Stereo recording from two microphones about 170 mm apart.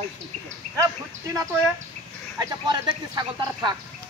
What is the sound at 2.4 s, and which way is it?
Speech, 25° right (ahead or behind).